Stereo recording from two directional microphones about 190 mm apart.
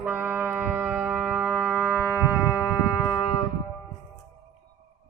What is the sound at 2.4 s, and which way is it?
Music, 15° left (ahead or behind).